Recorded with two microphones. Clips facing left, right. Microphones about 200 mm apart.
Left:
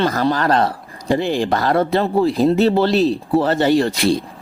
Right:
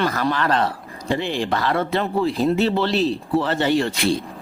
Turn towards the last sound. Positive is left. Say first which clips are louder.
# left 4 dB
turn(degrees=40)  # may be behind; listen again after turning